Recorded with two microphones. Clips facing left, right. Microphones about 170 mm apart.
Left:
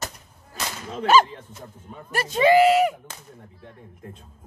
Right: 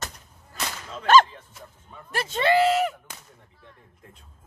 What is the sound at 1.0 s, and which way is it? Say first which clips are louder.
Speech: even; 10° left (ahead or behind).